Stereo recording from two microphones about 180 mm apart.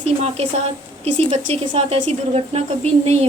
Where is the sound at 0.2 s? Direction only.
35° right (ahead or behind).